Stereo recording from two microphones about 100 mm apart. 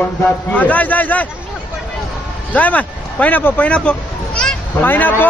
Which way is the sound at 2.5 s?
15° left (ahead or behind).